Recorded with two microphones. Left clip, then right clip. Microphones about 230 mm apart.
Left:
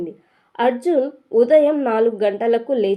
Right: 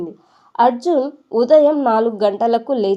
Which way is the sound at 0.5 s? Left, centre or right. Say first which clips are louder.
Right 4 dB; right.